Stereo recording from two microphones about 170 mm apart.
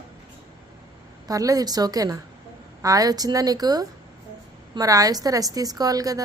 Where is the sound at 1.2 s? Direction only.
20° right (ahead or behind).